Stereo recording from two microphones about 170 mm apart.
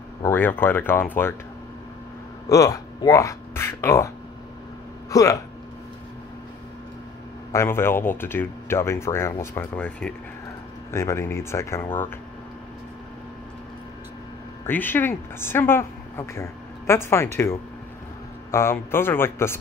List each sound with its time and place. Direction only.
0.2 s a woman's voice: 10° left (ahead or behind)
2.4 s speech: 20° left (ahead or behind)
5.1 s speech: 20° left (ahead or behind)
7.5 s a woman's voice: 15° left (ahead or behind)
14.7 s a woman's voice: 10° left (ahead or behind)